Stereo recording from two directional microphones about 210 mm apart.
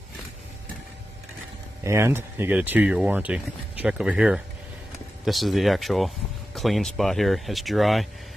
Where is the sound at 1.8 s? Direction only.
15° right (ahead or behind).